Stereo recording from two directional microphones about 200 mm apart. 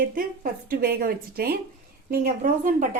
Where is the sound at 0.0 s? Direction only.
45° right (ahead or behind).